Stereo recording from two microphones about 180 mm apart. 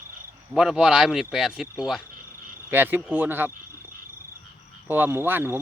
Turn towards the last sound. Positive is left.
turn(degrees=-10)  # may be behind; listen again after turning